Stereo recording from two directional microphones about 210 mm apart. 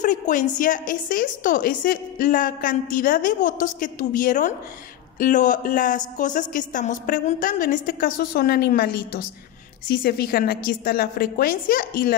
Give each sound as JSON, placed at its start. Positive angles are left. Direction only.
{"t": 0.0, "sound": "a woman's voice", "side_deg": 40}